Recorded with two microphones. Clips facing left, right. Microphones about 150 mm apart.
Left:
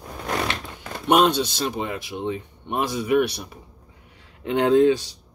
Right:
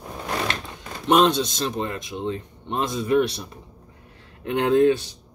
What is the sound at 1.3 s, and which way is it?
Speech, 65° left (ahead or behind).